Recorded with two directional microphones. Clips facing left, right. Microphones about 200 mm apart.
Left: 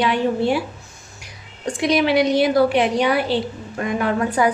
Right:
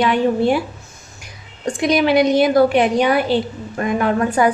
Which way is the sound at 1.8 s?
50° right (ahead or behind).